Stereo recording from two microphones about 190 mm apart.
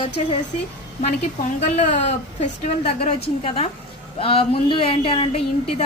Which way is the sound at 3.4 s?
30° left (ahead or behind).